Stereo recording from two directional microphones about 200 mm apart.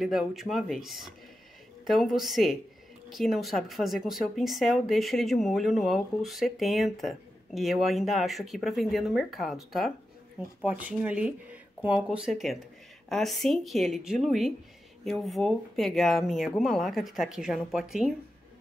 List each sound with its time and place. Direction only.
0.0 s speech: centre (ahead or behind)